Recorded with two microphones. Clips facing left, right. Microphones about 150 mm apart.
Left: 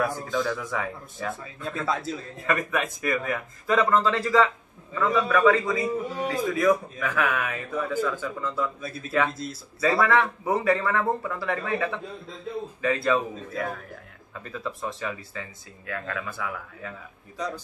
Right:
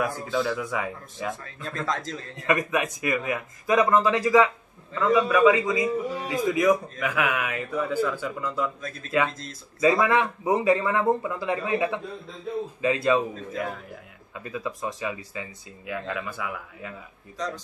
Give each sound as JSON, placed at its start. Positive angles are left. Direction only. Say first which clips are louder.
{"t": 0.0, "sound": "a man's voice", "louder": "even", "side_deg": -10}
{"t": 1.4, "sound": "speech", "louder": "left 1 dB", "side_deg": 10}
{"t": 2.4, "sound": "a man's voice", "louder": "right 2 dB", "side_deg": -15}
{"t": 9.3, "sound": "speech", "louder": "left 6 dB", "side_deg": 5}
{"t": 9.8, "sound": "a man's voice", "louder": "right 1 dB", "side_deg": -15}
{"t": 14.3, "sound": "a man's voice", "louder": "right 2 dB", "side_deg": -10}